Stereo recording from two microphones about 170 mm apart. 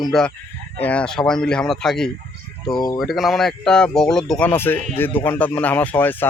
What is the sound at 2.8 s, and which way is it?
Speech, 25° left (ahead or behind).